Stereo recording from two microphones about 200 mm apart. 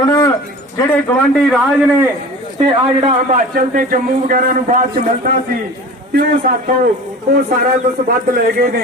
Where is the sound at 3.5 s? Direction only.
45° right (ahead or behind).